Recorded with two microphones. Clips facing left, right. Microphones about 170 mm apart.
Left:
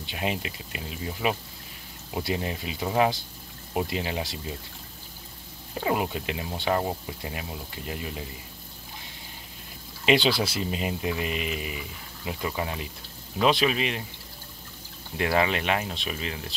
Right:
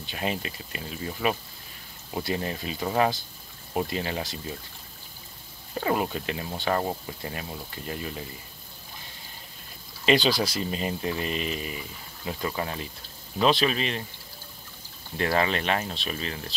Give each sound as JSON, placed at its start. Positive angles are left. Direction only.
{"t": 0.0, "sound": "speech", "side_deg": 15}
{"t": 5.8, "sound": "speech", "side_deg": 10}
{"t": 10.0, "sound": "speech", "side_deg": 20}
{"t": 10.7, "sound": "speech", "side_deg": 15}
{"t": 15.1, "sound": "speech", "side_deg": 15}